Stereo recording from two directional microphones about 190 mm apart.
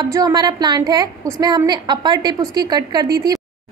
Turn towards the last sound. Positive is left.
turn(degrees=-20)  # may be behind; listen again after turning